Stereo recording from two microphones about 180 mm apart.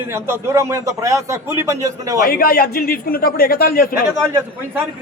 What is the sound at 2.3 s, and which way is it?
A man's voice, 55° left (ahead or behind).